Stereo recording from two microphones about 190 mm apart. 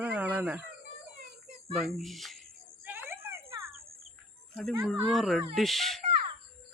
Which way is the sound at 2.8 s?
10° right (ahead or behind).